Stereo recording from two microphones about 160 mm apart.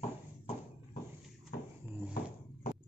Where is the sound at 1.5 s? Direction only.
75° left (ahead or behind).